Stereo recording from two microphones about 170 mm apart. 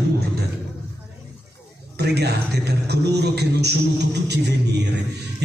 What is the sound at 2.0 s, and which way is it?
A man's voice, 75° right (ahead or behind).